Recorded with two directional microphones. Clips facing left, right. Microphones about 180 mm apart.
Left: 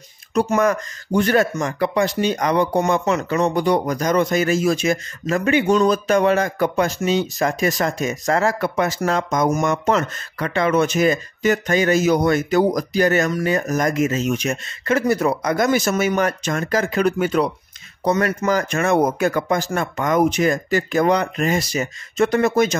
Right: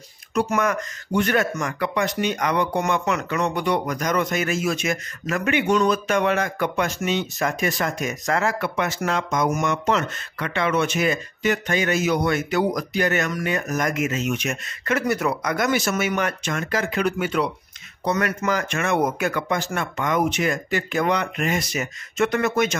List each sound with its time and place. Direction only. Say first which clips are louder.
0.3 s speech: left 4 dB; 35° left (ahead or behind)